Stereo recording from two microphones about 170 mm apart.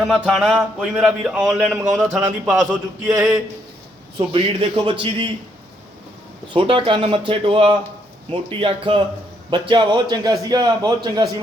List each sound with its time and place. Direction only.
0.0 s speech: centre (ahead or behind)
4.2 s speech: 30° right (ahead or behind)
6.5 s a man's voice: 30° right (ahead or behind)